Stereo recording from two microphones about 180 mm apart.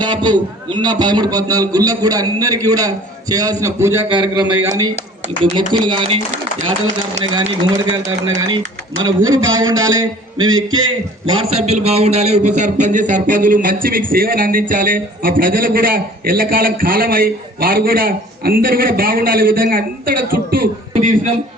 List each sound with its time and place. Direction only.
0.0 s a man's voice: 25° right (ahead or behind)
4.1 s a man's voice: 25° right (ahead or behind)
7.4 s a man's voice: 30° right (ahead or behind)